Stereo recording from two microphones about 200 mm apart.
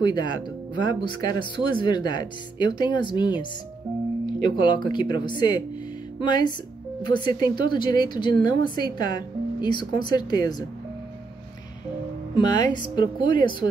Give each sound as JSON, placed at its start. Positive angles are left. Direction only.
{"t": 0.0, "sound": "speech", "side_deg": 20}
{"t": 4.6, "sound": "speech", "side_deg": 20}
{"t": 12.4, "sound": "speech", "side_deg": 20}